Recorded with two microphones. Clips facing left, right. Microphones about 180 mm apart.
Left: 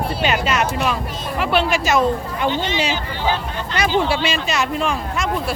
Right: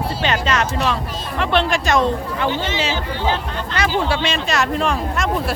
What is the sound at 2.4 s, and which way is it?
Speech, 15° left (ahead or behind).